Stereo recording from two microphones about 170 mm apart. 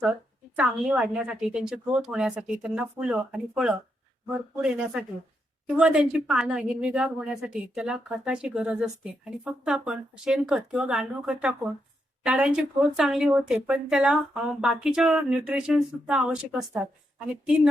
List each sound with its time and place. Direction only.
0.0 s a woman's voice: 5° right (ahead or behind)